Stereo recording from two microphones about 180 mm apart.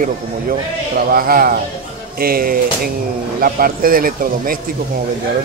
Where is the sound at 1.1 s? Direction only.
55° right (ahead or behind).